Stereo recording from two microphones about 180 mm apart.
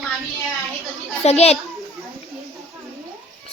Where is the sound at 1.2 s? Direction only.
35° left (ahead or behind).